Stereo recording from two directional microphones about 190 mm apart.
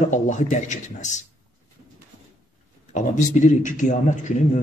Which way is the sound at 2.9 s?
40° left (ahead or behind).